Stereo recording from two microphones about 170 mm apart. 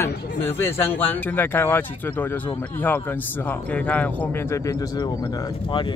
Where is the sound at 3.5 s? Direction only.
10° left (ahead or behind).